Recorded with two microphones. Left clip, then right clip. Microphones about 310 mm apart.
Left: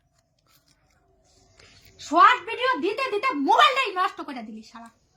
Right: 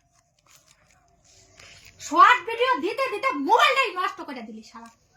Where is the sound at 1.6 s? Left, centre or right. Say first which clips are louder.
Right 2 dB; centre.